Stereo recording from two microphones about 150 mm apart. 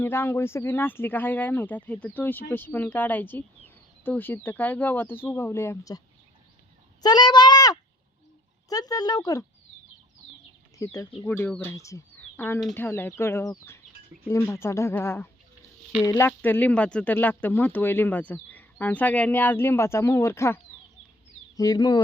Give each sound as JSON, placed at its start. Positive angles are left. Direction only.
{"t": 0.0, "sound": "speech", "side_deg": 15}
{"t": 7.0, "sound": "speech", "side_deg": 30}
{"t": 10.8, "sound": "speech", "side_deg": 20}